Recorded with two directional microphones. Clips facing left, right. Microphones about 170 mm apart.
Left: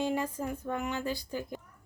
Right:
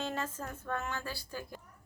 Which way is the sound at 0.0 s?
10° left (ahead or behind).